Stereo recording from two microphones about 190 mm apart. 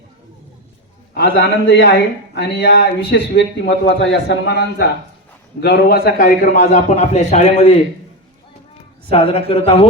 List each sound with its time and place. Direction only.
1.1 s a man's voice: 65° left (ahead or behind); by 7.8 s 35° left (ahead or behind)
9.0 s a man's voice: 30° left (ahead or behind)